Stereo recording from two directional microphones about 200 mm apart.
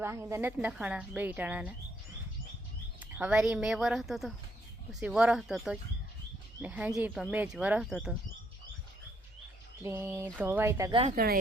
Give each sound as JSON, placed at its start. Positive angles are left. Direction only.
{"t": 0.0, "sound": "speech", "side_deg": -15}
{"t": 3.0, "sound": "speech", "side_deg": -5}
{"t": 9.8, "sound": "speech", "side_deg": -10}
{"t": 11.1, "sound": "speech", "side_deg": -50}